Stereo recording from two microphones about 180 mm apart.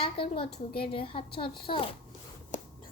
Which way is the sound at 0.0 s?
30° left (ahead or behind).